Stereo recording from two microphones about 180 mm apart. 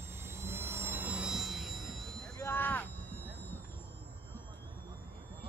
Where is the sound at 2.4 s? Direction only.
10° left (ahead or behind).